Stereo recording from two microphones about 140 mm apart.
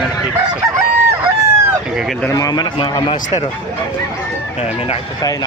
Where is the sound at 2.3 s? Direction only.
30° left (ahead or behind).